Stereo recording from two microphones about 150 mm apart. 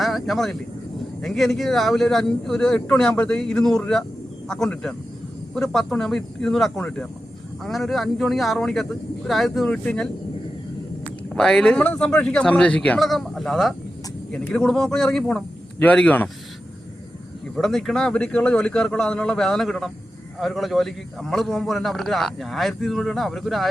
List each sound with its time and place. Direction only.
0.0 s vehicle: centre (ahead or behind)
1.2 s a man's voice: centre (ahead or behind)
11.3 s a man's voice: 5° left (ahead or behind)
17.5 s a man's voice: centre (ahead or behind)